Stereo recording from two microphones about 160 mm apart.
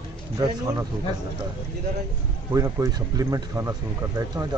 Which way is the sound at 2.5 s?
20° right (ahead or behind).